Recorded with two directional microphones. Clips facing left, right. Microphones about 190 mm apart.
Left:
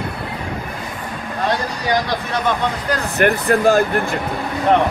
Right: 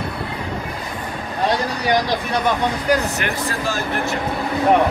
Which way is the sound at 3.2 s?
55° left (ahead or behind).